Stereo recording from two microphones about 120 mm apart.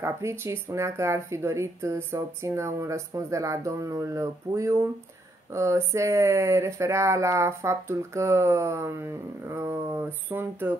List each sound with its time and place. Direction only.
0.0 s speech: 25° right (ahead or behind)